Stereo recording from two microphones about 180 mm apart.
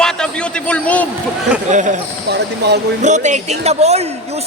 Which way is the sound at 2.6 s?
70° right (ahead or behind).